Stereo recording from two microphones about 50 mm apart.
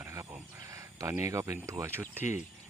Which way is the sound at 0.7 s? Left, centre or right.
Right.